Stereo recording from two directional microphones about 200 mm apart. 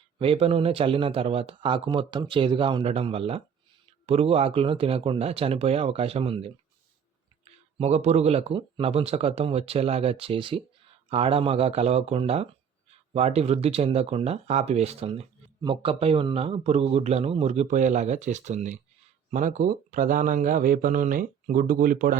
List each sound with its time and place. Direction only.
0.2 s speech: 30° right (ahead or behind)
7.8 s speech: 35° right (ahead or behind)